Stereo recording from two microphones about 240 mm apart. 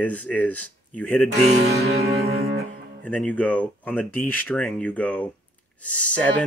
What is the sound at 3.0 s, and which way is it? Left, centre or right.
Speech, centre.